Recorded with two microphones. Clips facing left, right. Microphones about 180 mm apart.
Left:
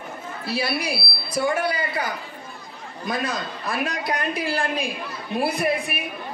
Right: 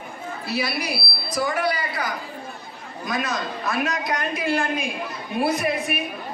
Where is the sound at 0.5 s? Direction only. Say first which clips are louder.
Left 1 dB; 30° left (ahead or behind).